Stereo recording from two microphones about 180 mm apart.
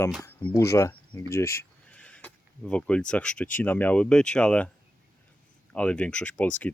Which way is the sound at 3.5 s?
10° left (ahead or behind).